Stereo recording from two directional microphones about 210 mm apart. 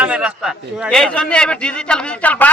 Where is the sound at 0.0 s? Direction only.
5° right (ahead or behind).